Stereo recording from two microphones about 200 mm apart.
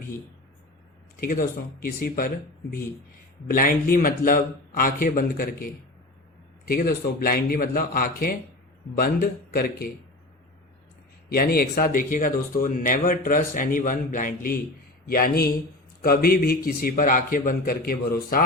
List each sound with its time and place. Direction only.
1.2 s speech: 50° left (ahead or behind)
3.5 s speech: 45° left (ahead or behind)
11.3 s speech: 50° left (ahead or behind)